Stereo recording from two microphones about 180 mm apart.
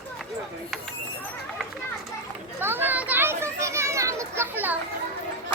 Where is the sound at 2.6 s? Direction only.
10° right (ahead or behind).